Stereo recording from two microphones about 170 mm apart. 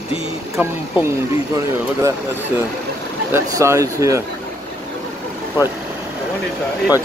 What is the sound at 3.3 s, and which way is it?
Speech, 15° right (ahead or behind).